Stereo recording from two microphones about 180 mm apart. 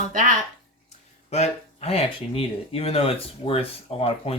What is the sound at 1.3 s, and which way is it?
Speech, 35° left (ahead or behind).